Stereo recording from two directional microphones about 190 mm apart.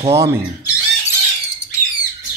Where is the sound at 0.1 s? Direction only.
15° right (ahead or behind).